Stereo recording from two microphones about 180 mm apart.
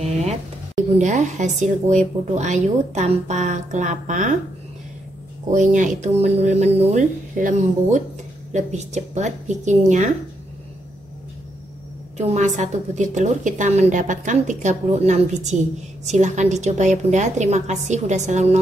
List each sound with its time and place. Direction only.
0.0 s a sound: 35° right (ahead or behind)
0.9 s a woman's voice: 40° right (ahead or behind)
5.5 s a woman's voice: 45° right (ahead or behind)
12.2 s a woman's voice: 40° right (ahead or behind)